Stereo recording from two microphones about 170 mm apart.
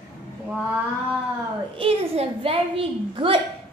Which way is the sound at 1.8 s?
35° right (ahead or behind).